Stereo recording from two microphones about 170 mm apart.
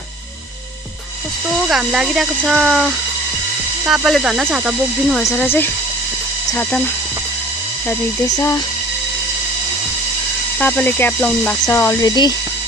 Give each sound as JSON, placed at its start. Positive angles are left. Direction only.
{"t": 1.7, "sound": "speech", "side_deg": -5}
{"t": 5.4, "sound": "speech", "side_deg": 10}
{"t": 10.6, "sound": "speech", "side_deg": 10}